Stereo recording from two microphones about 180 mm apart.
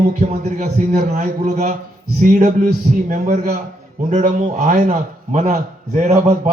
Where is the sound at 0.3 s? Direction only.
40° right (ahead or behind).